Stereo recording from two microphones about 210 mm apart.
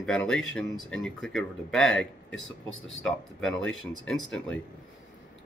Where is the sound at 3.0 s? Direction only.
Centre (ahead or behind).